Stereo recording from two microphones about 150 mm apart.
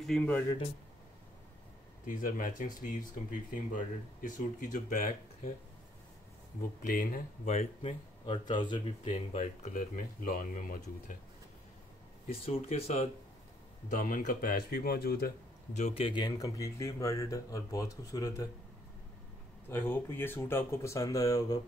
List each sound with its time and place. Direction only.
0.0 s speech: 5° left (ahead or behind)
2.0 s speech: 65° left (ahead or behind)
6.9 s speech: 70° left (ahead or behind)
8.3 s speech: 30° left (ahead or behind)
9.0 s speech: 50° left (ahead or behind); by 11.1 s 65° left (ahead or behind)
12.4 s speech: 45° left (ahead or behind)
13.8 s speech: 70° left (ahead or behind); by 15.3 s 90° left
15.7 s speech: 45° left (ahead or behind); by 18.5 s 20° left (ahead or behind)
19.7 s speech: 15° left (ahead or behind)